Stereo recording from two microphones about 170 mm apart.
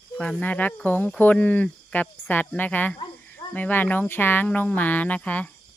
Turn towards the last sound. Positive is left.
turn(degrees=10)  # may be behind; listen again after turning